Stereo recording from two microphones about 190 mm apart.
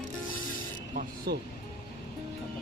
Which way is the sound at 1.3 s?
55° right (ahead or behind).